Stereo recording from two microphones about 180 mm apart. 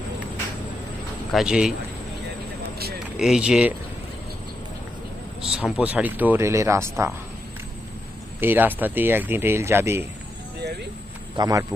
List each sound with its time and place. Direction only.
1.3 s speech: centre (ahead or behind)
3.2 s speech: 5° right (ahead or behind)
5.4 s speech: 5° right (ahead or behind)
8.4 s speech: 10° right (ahead or behind)
11.3 s speech: 20° right (ahead or behind)